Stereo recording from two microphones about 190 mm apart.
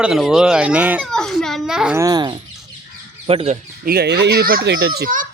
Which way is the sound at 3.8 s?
55° right (ahead or behind).